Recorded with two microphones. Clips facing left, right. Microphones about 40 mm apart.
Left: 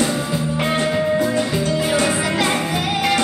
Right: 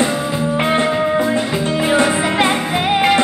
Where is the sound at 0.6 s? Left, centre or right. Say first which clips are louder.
Right 3 dB; right.